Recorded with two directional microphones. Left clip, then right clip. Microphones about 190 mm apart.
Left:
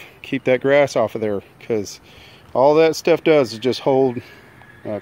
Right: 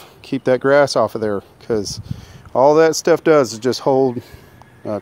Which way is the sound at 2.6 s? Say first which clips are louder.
Right 2 dB; 40° right (ahead or behind).